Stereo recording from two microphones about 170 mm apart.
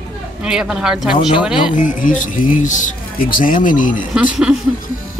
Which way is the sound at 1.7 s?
50° left (ahead or behind).